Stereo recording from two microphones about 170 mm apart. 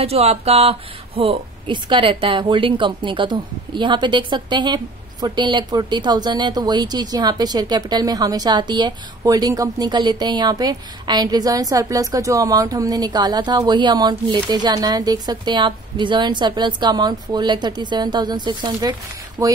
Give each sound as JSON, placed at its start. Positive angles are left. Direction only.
{"t": 0.0, "sound": "speech", "side_deg": -35}